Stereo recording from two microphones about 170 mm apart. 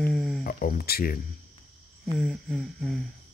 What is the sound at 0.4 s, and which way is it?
Speech, 60° left (ahead or behind).